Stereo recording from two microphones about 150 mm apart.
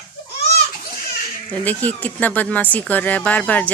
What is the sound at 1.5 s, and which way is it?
Speech, 10° left (ahead or behind).